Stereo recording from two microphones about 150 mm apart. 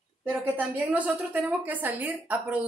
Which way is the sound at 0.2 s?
10° right (ahead or behind).